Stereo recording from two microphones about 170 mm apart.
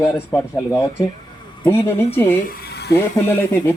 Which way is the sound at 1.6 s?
15° left (ahead or behind).